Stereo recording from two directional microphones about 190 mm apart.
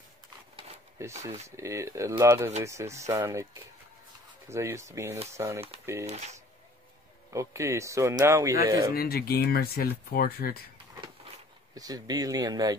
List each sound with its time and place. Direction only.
1.0 s speech: 15° right (ahead or behind)
4.5 s speech: 15° right (ahead or behind)
6.0 s speech: 35° right (ahead or behind)
7.3 s speech: 15° right (ahead or behind)
8.9 s speech: 55° left (ahead or behind)
11.7 s speech: 20° right (ahead or behind)